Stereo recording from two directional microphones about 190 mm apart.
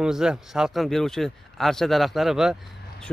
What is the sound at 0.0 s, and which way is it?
Speech, 5° right (ahead or behind).